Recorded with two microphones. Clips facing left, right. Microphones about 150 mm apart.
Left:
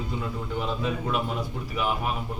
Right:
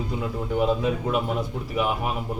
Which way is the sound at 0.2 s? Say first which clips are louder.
Right 9 dB; 10° right (ahead or behind).